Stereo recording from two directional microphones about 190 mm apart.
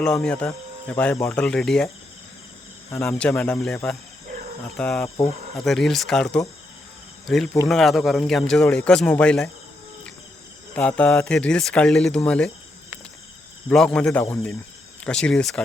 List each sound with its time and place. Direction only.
0.0 s speech: 5° left (ahead or behind)
2.9 s speech: 10° left (ahead or behind)
10.8 s speech: 5° left (ahead or behind)
13.7 s speech: 5° left (ahead or behind)